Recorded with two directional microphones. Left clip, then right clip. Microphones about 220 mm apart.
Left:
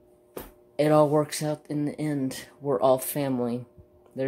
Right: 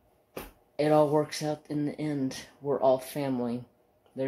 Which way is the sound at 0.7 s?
20° left (ahead or behind).